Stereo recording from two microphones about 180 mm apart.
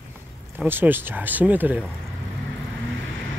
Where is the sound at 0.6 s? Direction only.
10° right (ahead or behind).